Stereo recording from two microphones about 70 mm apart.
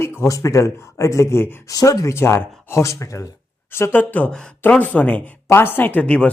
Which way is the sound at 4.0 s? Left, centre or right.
Left.